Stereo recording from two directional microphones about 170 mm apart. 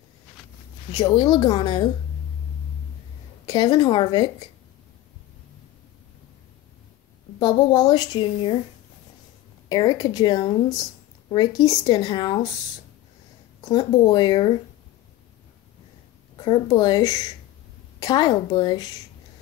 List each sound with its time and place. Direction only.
0.9 s speech: 25° left (ahead or behind)
3.4 s speech: 25° left (ahead or behind)
7.3 s speech: 25° left (ahead or behind)
9.7 s speech: 20° left (ahead or behind)
13.7 s speech: 25° left (ahead or behind)
16.3 s speech: 25° left (ahead or behind)